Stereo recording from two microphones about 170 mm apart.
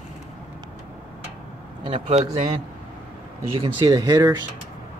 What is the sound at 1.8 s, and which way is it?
Speech, 30° right (ahead or behind).